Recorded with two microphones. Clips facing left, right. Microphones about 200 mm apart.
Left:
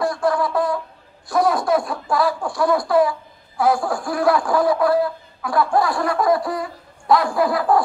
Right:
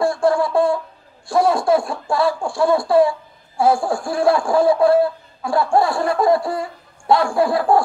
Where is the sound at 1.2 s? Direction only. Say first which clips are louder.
Right 2 dB; 25° right (ahead or behind).